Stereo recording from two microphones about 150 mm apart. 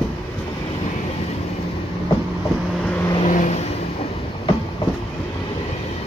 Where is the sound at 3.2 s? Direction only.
55° left (ahead or behind).